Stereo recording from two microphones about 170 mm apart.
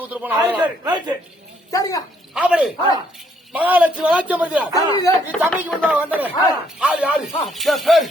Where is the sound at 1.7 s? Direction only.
20° left (ahead or behind).